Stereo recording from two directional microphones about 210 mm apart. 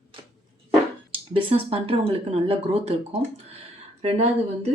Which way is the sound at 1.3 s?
25° right (ahead or behind).